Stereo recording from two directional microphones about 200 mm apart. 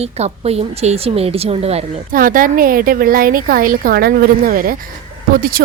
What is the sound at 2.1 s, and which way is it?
A woman's voice, 45° right (ahead or behind).